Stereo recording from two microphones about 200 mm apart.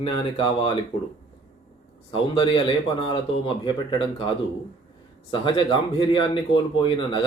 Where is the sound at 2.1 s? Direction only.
25° left (ahead or behind).